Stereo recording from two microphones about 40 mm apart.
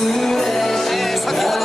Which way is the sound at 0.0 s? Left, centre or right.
Centre.